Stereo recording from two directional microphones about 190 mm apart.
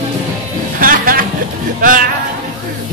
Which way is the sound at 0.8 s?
50° right (ahead or behind).